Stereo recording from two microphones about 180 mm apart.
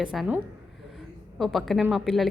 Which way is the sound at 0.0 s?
5° right (ahead or behind).